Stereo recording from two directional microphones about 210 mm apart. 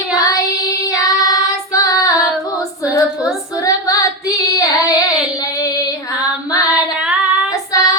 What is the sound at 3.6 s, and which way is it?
Female singing, 15° left (ahead or behind).